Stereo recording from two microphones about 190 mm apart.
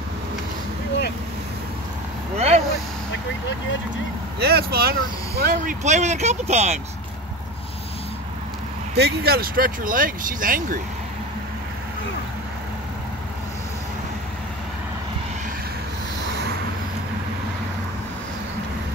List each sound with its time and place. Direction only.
2.3 s vehicle: 35° right (ahead or behind)
4.4 s speech: 55° right (ahead or behind)
5.4 s speech: 40° right (ahead or behind)
8.9 s speech: 60° right (ahead or behind)